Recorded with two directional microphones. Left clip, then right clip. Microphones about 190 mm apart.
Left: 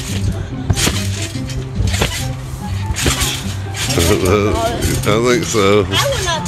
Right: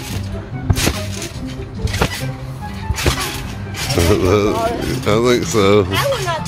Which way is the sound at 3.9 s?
5° right (ahead or behind).